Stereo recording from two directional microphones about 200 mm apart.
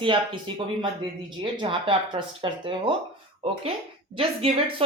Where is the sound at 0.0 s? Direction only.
25° right (ahead or behind).